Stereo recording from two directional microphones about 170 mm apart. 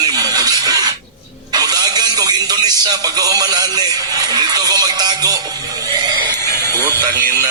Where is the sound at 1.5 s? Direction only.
25° right (ahead or behind).